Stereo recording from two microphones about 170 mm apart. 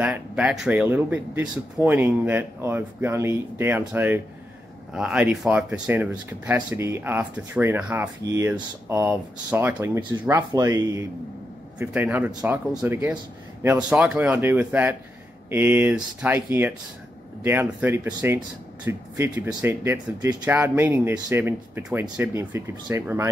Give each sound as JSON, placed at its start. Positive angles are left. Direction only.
{"t": 0.0, "sound": "speech", "side_deg": -5}
{"t": 10.5, "sound": "speech", "side_deg": -20}